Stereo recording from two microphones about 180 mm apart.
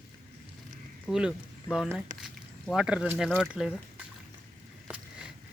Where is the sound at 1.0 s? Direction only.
5° right (ahead or behind).